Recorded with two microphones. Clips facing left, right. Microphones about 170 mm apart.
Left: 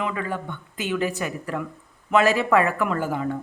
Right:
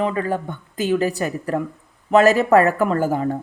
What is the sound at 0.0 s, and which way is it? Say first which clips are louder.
Speech: right 6 dB; 40° right (ahead or behind).